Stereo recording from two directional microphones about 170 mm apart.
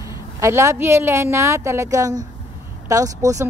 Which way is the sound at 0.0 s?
15° right (ahead or behind).